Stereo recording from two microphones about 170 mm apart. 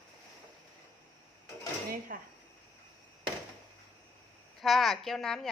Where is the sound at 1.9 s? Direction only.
60° right (ahead or behind).